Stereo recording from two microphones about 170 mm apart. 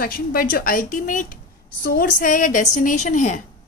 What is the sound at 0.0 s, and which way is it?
A woman's voice, 60° left (ahead or behind).